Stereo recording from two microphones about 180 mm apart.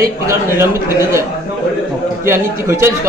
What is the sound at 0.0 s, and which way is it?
Speech, 15° right (ahead or behind).